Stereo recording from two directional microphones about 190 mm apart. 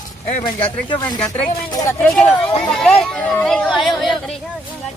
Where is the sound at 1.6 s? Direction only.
20° left (ahead or behind).